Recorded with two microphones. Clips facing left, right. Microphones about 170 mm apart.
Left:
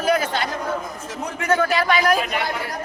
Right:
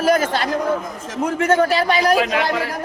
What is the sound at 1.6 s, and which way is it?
Speech, 30° right (ahead or behind).